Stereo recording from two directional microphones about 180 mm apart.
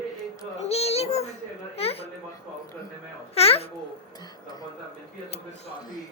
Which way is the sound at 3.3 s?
35° left (ahead or behind).